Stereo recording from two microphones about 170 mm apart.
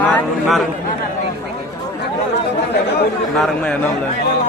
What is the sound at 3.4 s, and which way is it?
Speech, 5° left (ahead or behind).